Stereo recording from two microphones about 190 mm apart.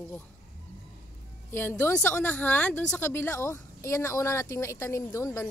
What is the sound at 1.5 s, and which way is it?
Speech, 10° left (ahead or behind).